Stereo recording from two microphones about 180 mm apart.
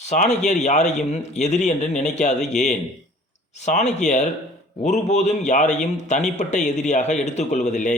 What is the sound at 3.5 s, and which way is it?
A man's voice, 40° left (ahead or behind).